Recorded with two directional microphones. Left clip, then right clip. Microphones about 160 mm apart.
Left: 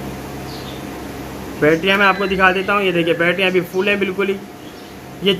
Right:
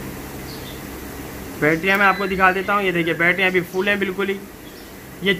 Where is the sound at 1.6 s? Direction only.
5° right (ahead or behind).